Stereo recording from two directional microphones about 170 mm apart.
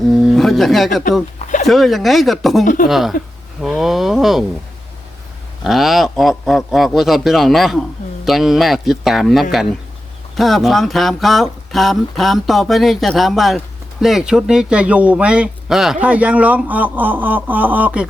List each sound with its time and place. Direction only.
0.2 s a sound: centre (ahead or behind)
1.6 s speech: centre (ahead or behind)
5.6 s speech: centre (ahead or behind)